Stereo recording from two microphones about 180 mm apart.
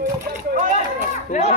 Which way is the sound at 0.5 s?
40° right (ahead or behind).